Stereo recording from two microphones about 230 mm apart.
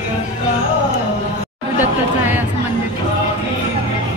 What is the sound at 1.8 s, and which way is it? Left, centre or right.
Speech, centre.